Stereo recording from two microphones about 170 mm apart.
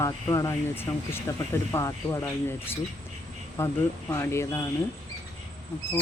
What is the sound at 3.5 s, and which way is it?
Speech, 15° left (ahead or behind).